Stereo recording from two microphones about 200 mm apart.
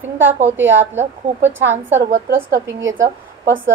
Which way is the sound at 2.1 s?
40° right (ahead or behind).